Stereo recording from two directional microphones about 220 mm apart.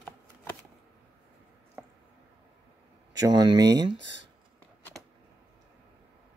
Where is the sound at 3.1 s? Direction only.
15° right (ahead or behind).